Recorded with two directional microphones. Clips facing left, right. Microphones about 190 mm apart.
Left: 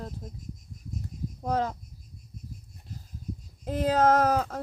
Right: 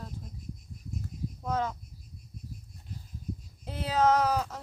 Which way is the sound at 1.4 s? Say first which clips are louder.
Left 3 dB; 35° left (ahead or behind).